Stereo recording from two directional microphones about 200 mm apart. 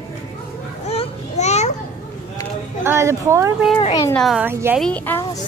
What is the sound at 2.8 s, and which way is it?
Speech, 15° right (ahead or behind).